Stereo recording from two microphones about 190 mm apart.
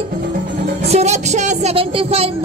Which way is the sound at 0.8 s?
35° right (ahead or behind).